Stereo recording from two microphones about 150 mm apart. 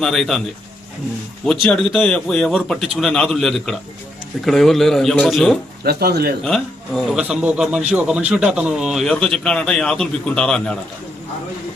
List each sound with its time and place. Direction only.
0.0 s a man's voice: centre (ahead or behind)
1.5 s a man's voice: 5° left (ahead or behind)
5.8 s speech: 90° right
6.4 s a man's voice: centre (ahead or behind)